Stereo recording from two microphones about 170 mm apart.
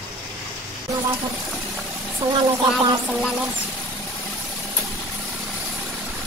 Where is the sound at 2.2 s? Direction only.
35° right (ahead or behind).